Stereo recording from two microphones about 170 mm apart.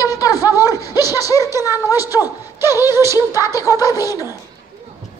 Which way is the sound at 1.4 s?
15° right (ahead or behind).